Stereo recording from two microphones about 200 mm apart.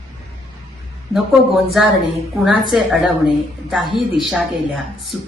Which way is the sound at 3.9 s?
25° left (ahead or behind).